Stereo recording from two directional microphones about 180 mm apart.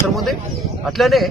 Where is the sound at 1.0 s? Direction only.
Centre (ahead or behind).